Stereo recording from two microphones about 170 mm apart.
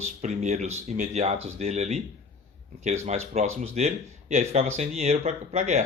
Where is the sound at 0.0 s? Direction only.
45° right (ahead or behind).